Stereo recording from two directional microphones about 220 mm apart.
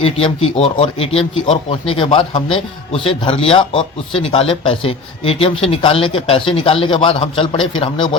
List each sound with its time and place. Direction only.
0.0 s speech: 25° left (ahead or behind)